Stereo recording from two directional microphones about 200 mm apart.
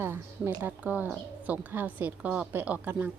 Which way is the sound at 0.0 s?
10° right (ahead or behind).